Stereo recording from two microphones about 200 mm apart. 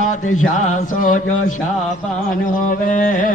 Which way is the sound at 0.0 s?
40° left (ahead or behind).